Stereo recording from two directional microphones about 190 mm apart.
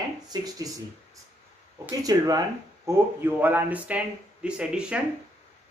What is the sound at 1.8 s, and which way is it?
Speech, 20° right (ahead or behind).